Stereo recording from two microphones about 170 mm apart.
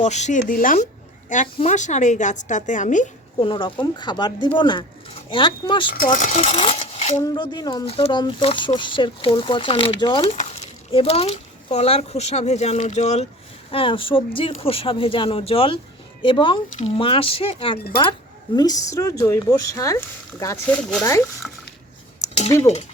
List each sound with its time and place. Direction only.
0.0 s speech: 45° left (ahead or behind)
3.3 s speech: 30° left (ahead or behind)
6.1 s speech: 50° left (ahead or behind)
7.2 s speech: 25° left (ahead or behind)
18.5 s speech: 20° left (ahead or behind)